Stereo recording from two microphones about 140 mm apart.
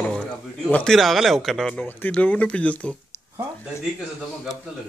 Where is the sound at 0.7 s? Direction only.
5° left (ahead or behind).